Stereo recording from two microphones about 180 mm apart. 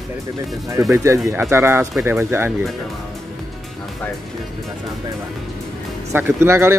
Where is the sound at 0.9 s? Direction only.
15° right (ahead or behind).